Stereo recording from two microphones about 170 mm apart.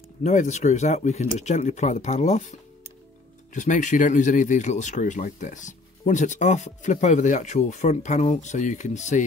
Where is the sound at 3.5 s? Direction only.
45° left (ahead or behind).